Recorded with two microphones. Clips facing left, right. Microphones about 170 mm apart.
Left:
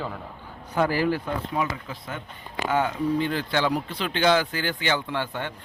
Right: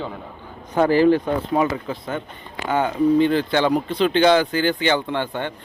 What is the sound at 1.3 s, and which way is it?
Speech, 35° right (ahead or behind).